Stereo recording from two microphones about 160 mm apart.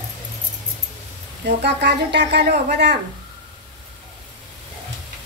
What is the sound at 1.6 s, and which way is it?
Speech, 90° right.